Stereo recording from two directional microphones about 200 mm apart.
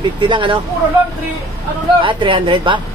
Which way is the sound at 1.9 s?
25° right (ahead or behind).